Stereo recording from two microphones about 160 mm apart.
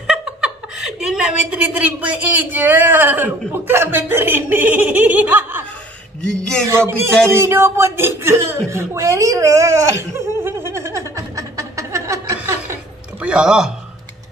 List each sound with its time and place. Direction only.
0.0 s a woman's voice: 5° right (ahead or behind)
6.8 s a sound: 15° right (ahead or behind)
13.2 s speech: 5° right (ahead or behind)